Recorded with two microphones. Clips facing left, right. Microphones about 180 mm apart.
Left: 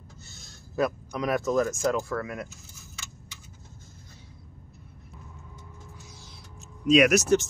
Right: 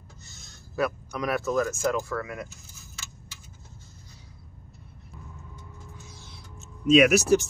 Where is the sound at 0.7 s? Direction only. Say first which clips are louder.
Left 1 dB; 20° left (ahead or behind).